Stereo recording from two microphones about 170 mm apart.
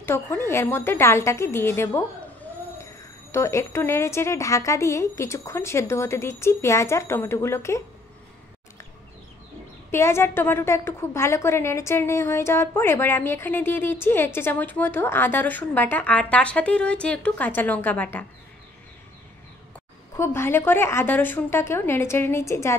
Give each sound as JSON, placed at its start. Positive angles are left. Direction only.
{"t": 0.0, "sound": "a woman's voice", "side_deg": 15}
{"t": 9.8, "sound": "a woman's voice", "side_deg": 15}
{"t": 20.2, "sound": "a woman's voice", "side_deg": 15}